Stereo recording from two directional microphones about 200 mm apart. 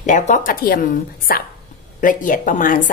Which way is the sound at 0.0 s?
40° left (ahead or behind).